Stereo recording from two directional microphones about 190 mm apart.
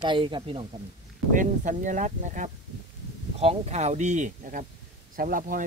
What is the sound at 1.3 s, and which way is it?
Speech, 45° right (ahead or behind).